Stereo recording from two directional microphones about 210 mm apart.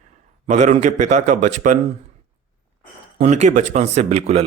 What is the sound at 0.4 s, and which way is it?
Speech, 35° right (ahead or behind).